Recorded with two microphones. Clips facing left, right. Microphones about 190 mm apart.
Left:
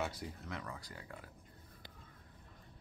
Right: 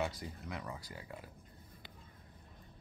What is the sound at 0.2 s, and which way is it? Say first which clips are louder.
Speech: right 1 dB; 5° right (ahead or behind).